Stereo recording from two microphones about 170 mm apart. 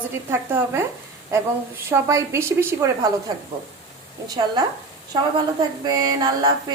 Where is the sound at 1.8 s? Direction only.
15° right (ahead or behind).